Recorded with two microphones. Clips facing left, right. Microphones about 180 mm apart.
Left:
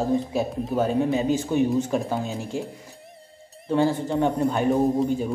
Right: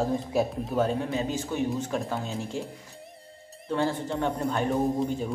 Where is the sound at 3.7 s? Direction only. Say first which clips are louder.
Left 6 dB; 15° left (ahead or behind).